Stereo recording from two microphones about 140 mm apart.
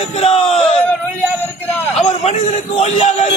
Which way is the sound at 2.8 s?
50° left (ahead or behind).